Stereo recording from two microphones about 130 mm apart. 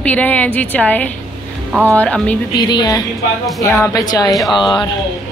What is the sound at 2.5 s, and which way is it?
A woman's voice, 35° left (ahead or behind).